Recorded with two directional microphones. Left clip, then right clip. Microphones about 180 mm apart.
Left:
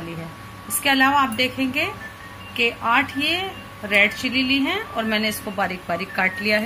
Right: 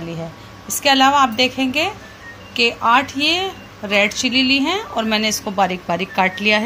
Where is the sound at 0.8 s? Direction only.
45° right (ahead or behind).